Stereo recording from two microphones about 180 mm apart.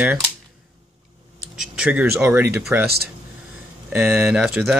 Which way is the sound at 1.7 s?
10° right (ahead or behind).